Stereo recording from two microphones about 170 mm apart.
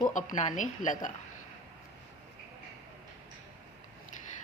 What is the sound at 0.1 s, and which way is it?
Speech, 50° left (ahead or behind).